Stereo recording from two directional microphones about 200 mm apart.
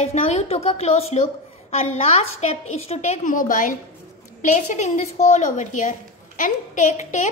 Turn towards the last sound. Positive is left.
turn(degrees=35)  # may be behind; listen again after turning